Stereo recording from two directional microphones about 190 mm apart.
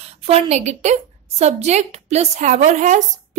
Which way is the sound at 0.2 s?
30° right (ahead or behind).